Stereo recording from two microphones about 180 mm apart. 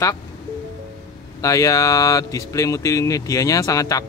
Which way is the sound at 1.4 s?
20° left (ahead or behind).